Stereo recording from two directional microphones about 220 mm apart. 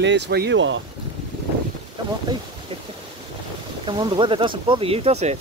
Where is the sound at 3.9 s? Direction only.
20° right (ahead or behind).